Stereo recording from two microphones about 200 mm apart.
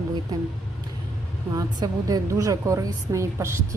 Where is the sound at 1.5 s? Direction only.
20° right (ahead or behind).